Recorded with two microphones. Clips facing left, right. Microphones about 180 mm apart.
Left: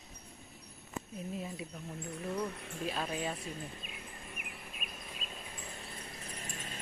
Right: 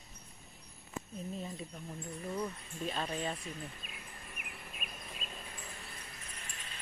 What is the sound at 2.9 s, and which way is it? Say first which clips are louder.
Speech: even; 5° left (ahead or behind).